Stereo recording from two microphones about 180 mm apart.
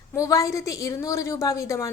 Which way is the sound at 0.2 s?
20° left (ahead or behind).